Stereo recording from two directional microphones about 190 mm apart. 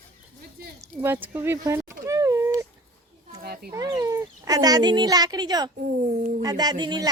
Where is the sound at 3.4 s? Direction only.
55° right (ahead or behind).